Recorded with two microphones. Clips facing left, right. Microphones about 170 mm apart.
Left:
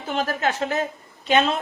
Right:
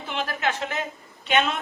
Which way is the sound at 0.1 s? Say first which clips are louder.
Left 4 dB; 40° left (ahead or behind).